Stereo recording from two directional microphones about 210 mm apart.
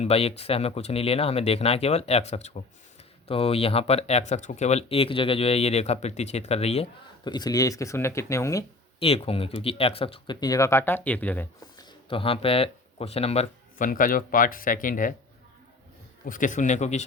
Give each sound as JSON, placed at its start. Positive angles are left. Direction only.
{"t": 0.0, "sound": "speech", "side_deg": 30}
{"t": 7.3, "sound": "speech", "side_deg": 20}
{"t": 9.0, "sound": "speech", "side_deg": 25}
{"t": 11.6, "sound": "speech", "side_deg": 20}
{"t": 16.2, "sound": "speech", "side_deg": 40}